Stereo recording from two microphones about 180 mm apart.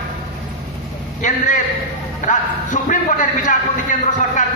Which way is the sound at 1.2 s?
45° left (ahead or behind).